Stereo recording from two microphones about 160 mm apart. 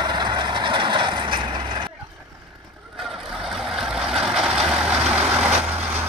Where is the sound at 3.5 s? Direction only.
Centre (ahead or behind).